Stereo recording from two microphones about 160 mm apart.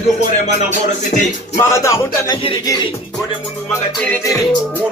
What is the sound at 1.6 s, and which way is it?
Music, 20° left (ahead or behind).